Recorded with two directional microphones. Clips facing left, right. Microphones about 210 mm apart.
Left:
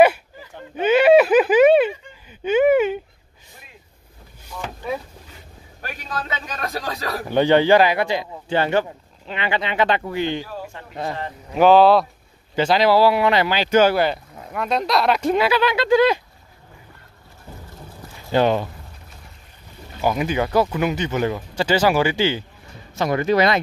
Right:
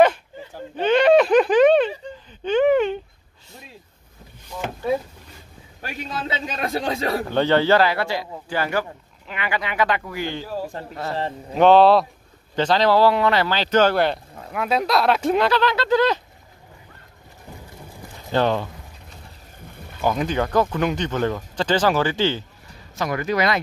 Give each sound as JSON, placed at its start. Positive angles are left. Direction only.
{"t": 0.7, "sound": "a sound", "side_deg": 5}
{"t": 6.0, "sound": "speech", "side_deg": -25}
{"t": 7.2, "sound": "speech", "side_deg": 15}
{"t": 10.6, "sound": "a sound", "side_deg": -35}
{"t": 11.5, "sound": "speech", "side_deg": 0}
{"t": 18.3, "sound": "speech", "side_deg": 15}
{"t": 20.0, "sound": "speech", "side_deg": 10}
{"t": 22.9, "sound": "speech", "side_deg": 25}